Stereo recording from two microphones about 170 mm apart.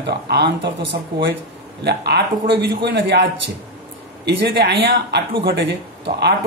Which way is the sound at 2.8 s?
85° right.